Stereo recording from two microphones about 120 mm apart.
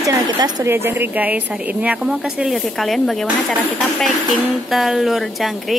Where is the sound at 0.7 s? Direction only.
20° right (ahead or behind); by 3.3 s centre (ahead or behind).